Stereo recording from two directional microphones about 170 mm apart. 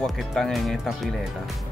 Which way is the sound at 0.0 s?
Centre (ahead or behind).